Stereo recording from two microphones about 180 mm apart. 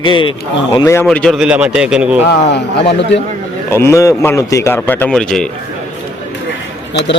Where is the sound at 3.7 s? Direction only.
15° left (ahead or behind).